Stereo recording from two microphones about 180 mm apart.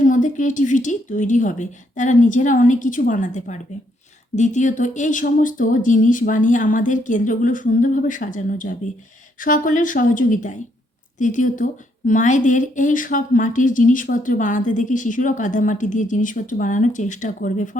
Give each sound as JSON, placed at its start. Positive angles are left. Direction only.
{"t": 0.0, "sound": "speech", "side_deg": 45}